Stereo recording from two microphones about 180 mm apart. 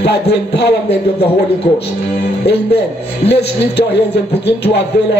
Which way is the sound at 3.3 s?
70° left (ahead or behind).